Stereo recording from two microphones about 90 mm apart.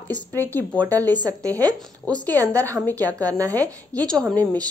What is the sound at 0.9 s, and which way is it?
Speech, 40° right (ahead or behind).